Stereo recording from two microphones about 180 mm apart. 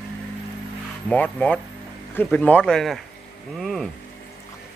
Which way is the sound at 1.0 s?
10° left (ahead or behind).